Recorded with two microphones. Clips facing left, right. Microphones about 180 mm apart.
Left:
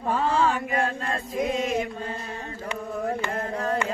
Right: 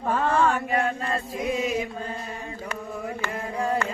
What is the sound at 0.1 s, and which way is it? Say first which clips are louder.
Mantra: right 1 dB; 50° right (ahead or behind).